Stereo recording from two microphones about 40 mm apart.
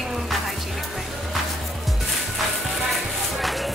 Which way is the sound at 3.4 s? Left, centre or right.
Centre.